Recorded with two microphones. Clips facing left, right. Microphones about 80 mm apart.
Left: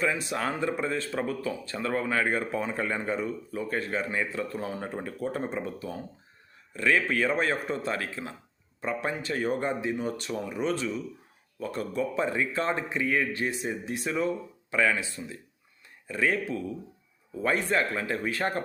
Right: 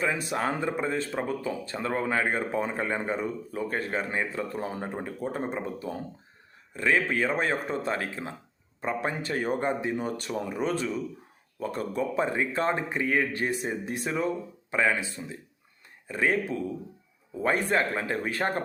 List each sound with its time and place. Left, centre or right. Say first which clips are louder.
0.0 s speech: right 1 dB; right